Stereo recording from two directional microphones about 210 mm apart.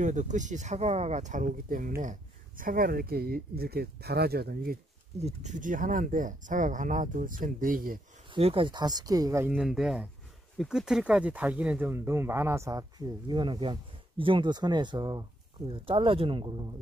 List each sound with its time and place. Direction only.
0.0 s speech: 35° right (ahead or behind)
5.2 s speech: 35° right (ahead or behind)
8.3 s speech: 25° right (ahead or behind)
9.5 s speech: centre (ahead or behind); by 16.7 s 20° right (ahead or behind)